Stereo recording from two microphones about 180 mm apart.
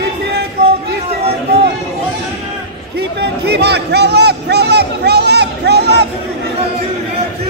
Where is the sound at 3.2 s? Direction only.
65° right (ahead or behind).